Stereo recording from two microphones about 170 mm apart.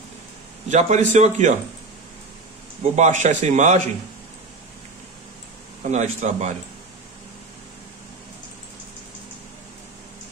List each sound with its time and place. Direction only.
0.7 s a man's voice: 40° right (ahead or behind)
2.8 s a man's voice: 45° right (ahead or behind)
5.9 s a man's voice: 45° right (ahead or behind)